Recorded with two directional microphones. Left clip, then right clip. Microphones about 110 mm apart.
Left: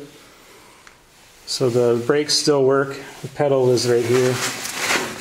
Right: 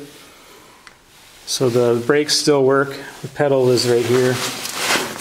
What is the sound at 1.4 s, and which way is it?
Speech, 15° right (ahead or behind).